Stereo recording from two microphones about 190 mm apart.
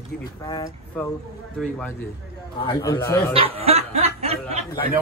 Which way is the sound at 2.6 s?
15° left (ahead or behind).